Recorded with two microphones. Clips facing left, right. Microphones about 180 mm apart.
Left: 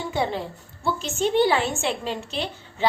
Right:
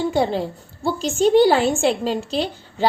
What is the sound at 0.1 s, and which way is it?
A woman's voice, 30° right (ahead or behind).